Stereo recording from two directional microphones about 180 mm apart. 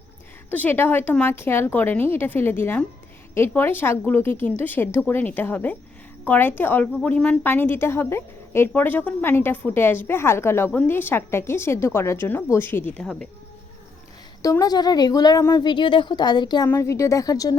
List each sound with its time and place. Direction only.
0.5 s a woman's voice: 10° left (ahead or behind)
14.4 s a woman's voice: 20° left (ahead or behind)